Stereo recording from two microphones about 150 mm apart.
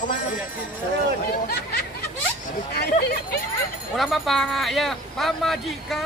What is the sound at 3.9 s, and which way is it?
Speech, centre (ahead or behind).